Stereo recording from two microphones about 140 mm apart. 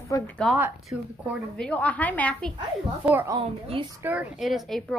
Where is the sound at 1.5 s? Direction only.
10° left (ahead or behind).